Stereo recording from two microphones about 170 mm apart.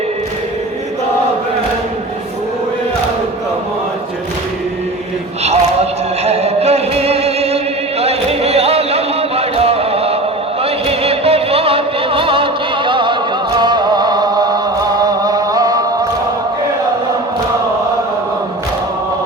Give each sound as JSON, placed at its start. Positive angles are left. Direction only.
{"t": 5.4, "sound": "music", "side_deg": -40}
{"t": 8.0, "sound": "a sound", "side_deg": -35}
{"t": 10.6, "sound": "music", "side_deg": -35}
{"t": 13.6, "sound": "chant", "side_deg": -25}